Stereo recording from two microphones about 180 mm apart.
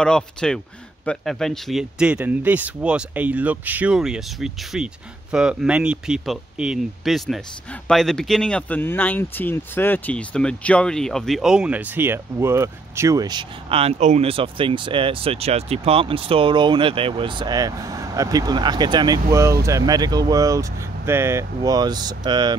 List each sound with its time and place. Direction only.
0.0 s speech: 5° left (ahead or behind); by 22.6 s 25° right (ahead or behind)